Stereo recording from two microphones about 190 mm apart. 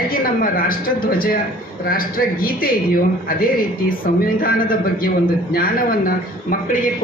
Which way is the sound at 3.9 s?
50° left (ahead or behind).